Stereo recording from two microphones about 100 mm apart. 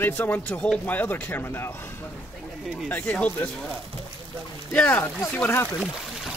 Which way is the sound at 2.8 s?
15° left (ahead or behind).